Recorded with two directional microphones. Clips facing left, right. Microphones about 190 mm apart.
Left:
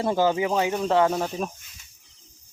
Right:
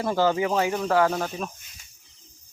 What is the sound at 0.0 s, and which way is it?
Speech, 20° left (ahead or behind).